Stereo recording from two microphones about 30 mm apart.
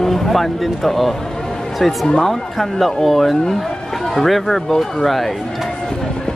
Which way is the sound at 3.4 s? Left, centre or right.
Centre.